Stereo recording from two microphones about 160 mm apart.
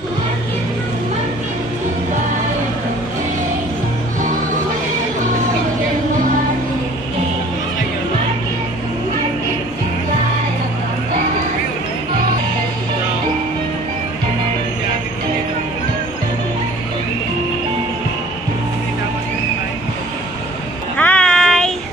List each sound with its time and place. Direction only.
21.0 s child singing: 10° left (ahead or behind)